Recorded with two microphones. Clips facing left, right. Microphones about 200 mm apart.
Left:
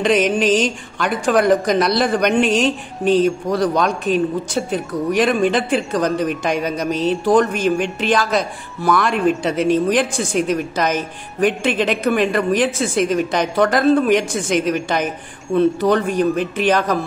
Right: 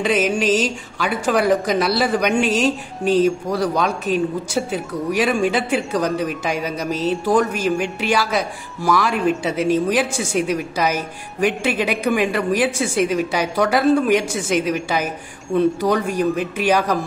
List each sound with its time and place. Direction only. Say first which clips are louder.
0.0 s speech: left 3 dB; 5° right (ahead or behind)